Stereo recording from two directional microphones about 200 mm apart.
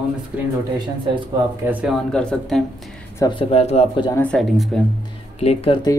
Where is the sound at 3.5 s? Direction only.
30° left (ahead or behind).